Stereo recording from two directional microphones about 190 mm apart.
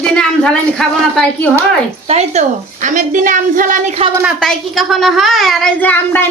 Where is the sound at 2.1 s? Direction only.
35° right (ahead or behind).